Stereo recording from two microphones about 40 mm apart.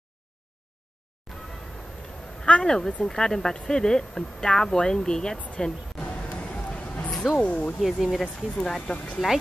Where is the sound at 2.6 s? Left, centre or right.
Centre.